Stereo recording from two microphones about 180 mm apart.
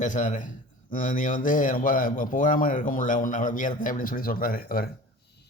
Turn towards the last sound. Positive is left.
turn(degrees=55)  # may be behind; listen again after turning